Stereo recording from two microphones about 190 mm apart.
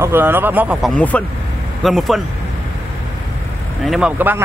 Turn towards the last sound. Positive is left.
turn(degrees=-5)  # may be behind; listen again after turning